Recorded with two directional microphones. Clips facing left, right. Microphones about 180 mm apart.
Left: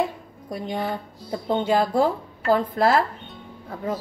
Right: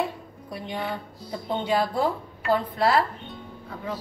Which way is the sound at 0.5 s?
45° left (ahead or behind).